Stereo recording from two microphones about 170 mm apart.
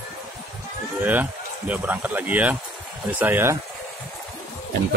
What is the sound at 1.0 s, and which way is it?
Speech, 10° right (ahead or behind).